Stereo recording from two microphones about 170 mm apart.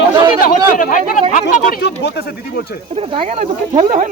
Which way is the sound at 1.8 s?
85° left.